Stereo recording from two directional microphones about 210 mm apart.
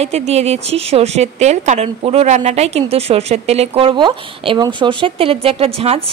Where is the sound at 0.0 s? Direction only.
30° right (ahead or behind).